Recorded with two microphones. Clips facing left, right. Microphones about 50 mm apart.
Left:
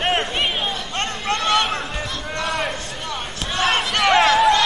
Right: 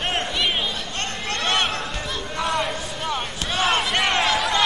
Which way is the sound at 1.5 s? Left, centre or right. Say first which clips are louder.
Left 1 dB; centre.